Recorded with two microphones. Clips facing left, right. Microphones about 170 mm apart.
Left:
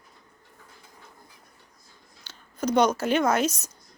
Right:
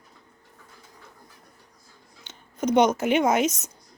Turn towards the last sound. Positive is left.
turn(degrees=-20)  # may be behind; listen again after turning